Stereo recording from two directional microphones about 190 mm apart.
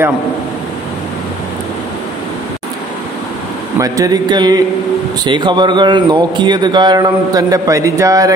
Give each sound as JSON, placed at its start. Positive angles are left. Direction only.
{"t": 3.7, "sound": "speech", "side_deg": -15}